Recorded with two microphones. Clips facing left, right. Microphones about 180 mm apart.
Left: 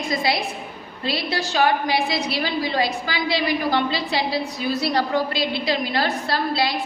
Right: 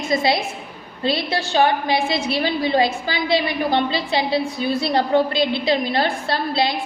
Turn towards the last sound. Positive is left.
turn(degrees=-25)  # may be behind; listen again after turning